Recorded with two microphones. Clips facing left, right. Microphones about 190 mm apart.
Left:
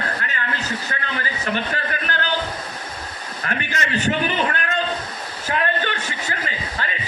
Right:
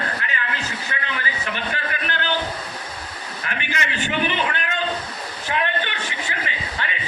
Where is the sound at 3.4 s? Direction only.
40° left (ahead or behind).